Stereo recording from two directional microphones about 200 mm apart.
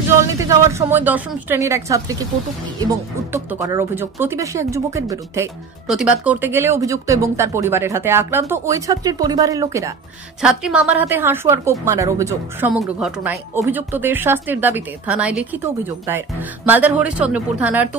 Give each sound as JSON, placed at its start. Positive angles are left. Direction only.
{"t": 0.1, "sound": "speech", "side_deg": -15}
{"t": 5.9, "sound": "speech", "side_deg": -5}
{"t": 10.4, "sound": "speech", "side_deg": -5}
{"t": 12.8, "sound": "speech", "side_deg": 0}